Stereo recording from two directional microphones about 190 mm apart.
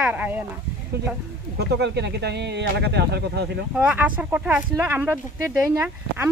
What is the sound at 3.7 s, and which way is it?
Speech, 5° right (ahead or behind).